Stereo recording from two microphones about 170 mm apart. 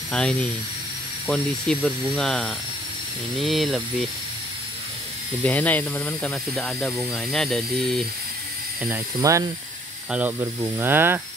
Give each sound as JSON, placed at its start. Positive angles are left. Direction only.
{"t": 0.1, "sound": "speech", "side_deg": 5}
{"t": 5.4, "sound": "speech", "side_deg": 10}
{"t": 9.2, "sound": "speech", "side_deg": -20}